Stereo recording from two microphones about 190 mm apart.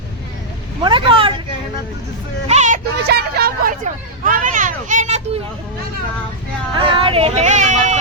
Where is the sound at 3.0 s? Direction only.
55° right (ahead or behind).